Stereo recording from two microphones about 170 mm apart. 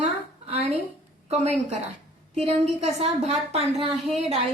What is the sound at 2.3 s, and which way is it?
A woman's voice, 40° right (ahead or behind).